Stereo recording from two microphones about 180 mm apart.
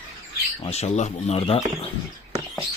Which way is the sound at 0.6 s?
35° left (ahead or behind).